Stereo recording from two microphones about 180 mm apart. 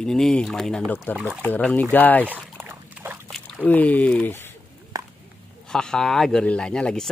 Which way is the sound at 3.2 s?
5° left (ahead or behind).